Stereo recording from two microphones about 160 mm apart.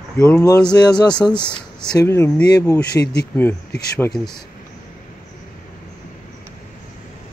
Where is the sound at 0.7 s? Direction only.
25° left (ahead or behind).